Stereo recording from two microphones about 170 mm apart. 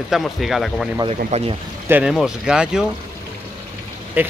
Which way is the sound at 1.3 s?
40° right (ahead or behind).